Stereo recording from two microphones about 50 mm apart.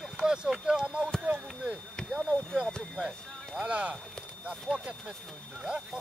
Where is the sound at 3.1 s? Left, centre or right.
Centre.